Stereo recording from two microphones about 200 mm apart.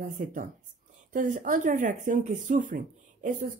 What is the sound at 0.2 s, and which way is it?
Speech, 40° right (ahead or behind).